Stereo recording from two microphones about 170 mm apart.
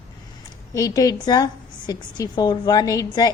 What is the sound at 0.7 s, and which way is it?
A woman's voice, 20° left (ahead or behind).